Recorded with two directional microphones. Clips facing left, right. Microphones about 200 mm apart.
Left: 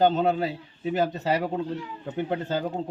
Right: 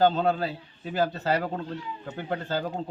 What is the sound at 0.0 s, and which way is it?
A man's voice, 20° left (ahead or behind).